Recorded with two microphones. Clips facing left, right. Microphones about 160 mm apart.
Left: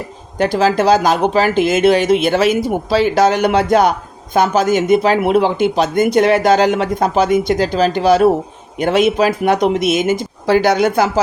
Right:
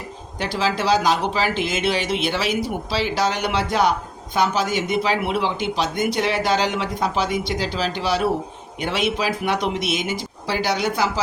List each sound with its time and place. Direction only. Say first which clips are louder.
0.3 s speech: left 9 dB; 50° left (ahead or behind)